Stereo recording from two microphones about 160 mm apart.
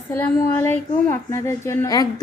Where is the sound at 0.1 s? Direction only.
15° left (ahead or behind).